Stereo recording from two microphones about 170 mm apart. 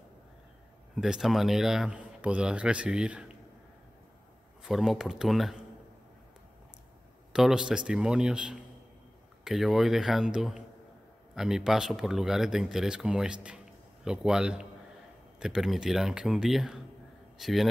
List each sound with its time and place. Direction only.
0.9 s speech: centre (ahead or behind)
4.6 s speech: centre (ahead or behind)
7.3 s a man's voice: 5° right (ahead or behind)